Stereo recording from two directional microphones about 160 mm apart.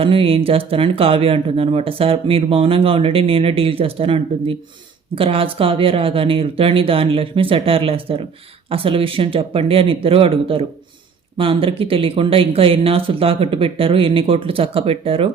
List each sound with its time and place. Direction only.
0.0 s speech: 35° right (ahead or behind)